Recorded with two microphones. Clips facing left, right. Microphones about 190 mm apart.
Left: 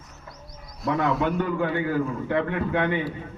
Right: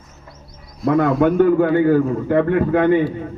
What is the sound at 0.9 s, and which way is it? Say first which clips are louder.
A man's voice: right 8 dB; 45° right (ahead or behind).